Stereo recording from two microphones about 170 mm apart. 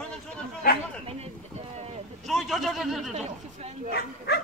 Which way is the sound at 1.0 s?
35° right (ahead or behind).